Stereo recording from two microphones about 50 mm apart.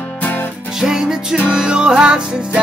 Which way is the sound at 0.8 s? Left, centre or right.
Centre.